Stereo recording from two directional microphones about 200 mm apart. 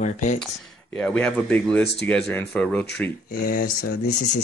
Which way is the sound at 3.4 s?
45° left (ahead or behind).